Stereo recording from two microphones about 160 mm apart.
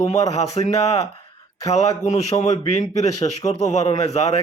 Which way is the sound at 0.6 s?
40° left (ahead or behind).